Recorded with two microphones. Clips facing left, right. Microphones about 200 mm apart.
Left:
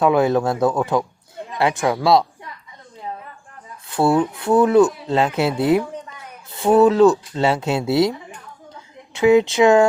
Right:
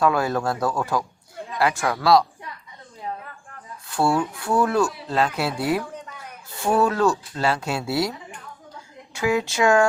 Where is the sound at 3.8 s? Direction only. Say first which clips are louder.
Left 5 dB; 20° left (ahead or behind).